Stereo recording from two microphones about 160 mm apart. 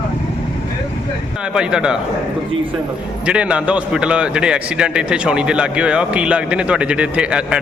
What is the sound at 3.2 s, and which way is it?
A man's voice, 5° right (ahead or behind).